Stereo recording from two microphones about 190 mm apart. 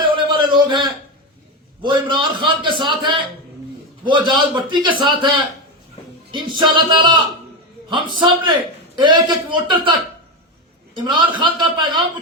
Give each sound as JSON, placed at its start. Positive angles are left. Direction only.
{"t": 0.0, "sound": "a sound", "side_deg": -25}
{"t": 1.8, "sound": "a man's voice", "side_deg": -25}
{"t": 6.6, "sound": "a man's voice", "side_deg": -25}
{"t": 10.9, "sound": "a man's voice", "side_deg": -25}